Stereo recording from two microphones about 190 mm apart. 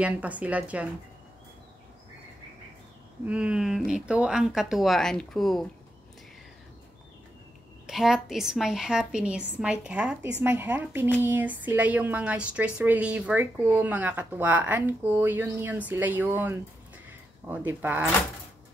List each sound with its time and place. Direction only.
0.0 s a woman's voice: 5° right (ahead or behind)
3.3 s a woman's voice: 5° right (ahead or behind)
7.8 s a woman's voice: centre (ahead or behind)